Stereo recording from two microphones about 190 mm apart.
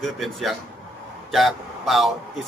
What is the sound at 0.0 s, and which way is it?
A man's voice, centre (ahead or behind).